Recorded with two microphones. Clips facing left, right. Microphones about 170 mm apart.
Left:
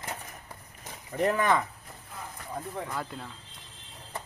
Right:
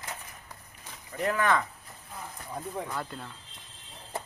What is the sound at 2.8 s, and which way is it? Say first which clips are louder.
Speech: even; centre (ahead or behind).